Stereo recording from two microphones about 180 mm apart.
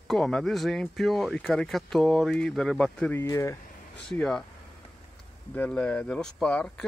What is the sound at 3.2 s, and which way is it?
Speech, 15° left (ahead or behind).